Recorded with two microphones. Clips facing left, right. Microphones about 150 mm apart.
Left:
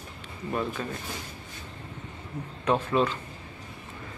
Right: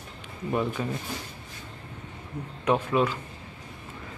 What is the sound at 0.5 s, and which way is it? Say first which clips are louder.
Speech: right 3 dB; 15° right (ahead or behind).